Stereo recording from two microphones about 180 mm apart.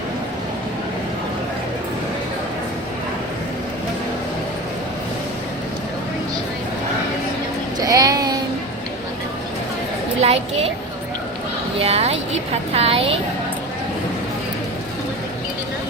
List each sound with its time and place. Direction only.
7.8 s a sound: 20° right (ahead or behind)
10.2 s a child's voice: 35° right (ahead or behind)
11.8 s speech: 35° right (ahead or behind)